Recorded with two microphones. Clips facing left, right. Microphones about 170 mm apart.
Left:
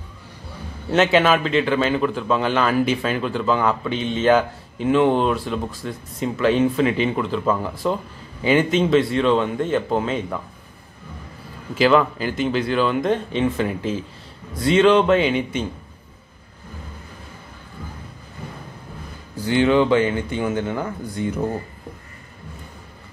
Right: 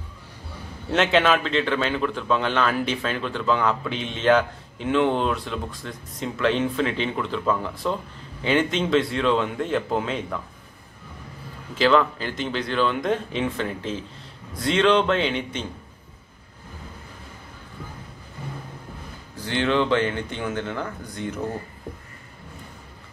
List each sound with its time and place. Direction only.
0.9 s a man's voice: 5° left (ahead or behind)
11.7 s speech: 10° left (ahead or behind)
19.4 s speech: 10° left (ahead or behind)